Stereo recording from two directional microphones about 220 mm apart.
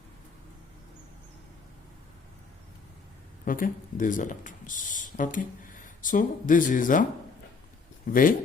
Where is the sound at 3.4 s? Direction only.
40° left (ahead or behind).